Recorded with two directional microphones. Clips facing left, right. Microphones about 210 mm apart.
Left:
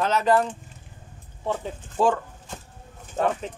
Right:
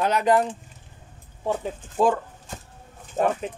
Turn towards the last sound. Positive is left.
turn(degrees=-20)  # may be behind; listen again after turning